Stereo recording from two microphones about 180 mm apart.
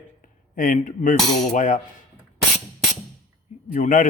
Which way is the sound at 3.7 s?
45° left (ahead or behind).